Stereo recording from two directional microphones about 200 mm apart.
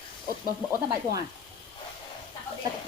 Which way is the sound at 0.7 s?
15° right (ahead or behind).